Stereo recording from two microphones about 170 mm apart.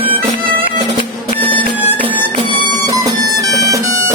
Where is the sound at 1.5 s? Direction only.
30° right (ahead or behind).